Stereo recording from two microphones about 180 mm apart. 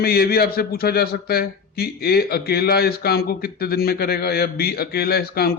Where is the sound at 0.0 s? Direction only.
60° left (ahead or behind).